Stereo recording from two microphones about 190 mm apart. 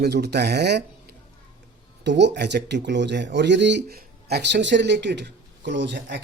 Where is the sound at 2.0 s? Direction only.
65° right (ahead or behind).